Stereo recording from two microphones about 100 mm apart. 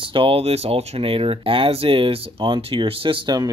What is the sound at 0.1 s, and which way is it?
Speech, 65° right (ahead or behind).